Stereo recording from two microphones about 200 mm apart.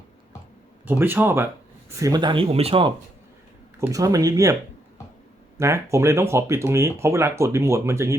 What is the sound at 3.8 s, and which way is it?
Speech, 15° right (ahead or behind).